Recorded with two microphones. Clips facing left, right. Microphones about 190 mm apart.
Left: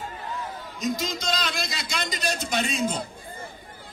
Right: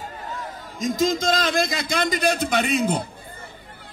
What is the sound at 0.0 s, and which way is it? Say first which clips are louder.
A man's voice: right 1 dB; 45° right (ahead or behind).